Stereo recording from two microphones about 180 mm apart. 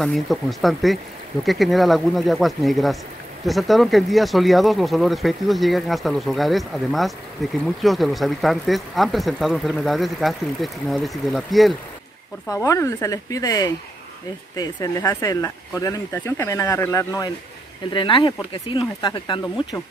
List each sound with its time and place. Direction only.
0.0 s speech: centre (ahead or behind)
12.4 s speech: 15° left (ahead or behind)